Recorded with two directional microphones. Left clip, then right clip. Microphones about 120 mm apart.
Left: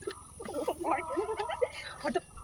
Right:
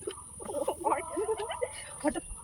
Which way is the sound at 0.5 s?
30° left (ahead or behind).